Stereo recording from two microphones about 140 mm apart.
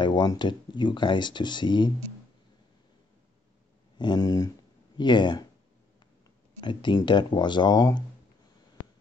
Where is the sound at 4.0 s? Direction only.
30° left (ahead or behind).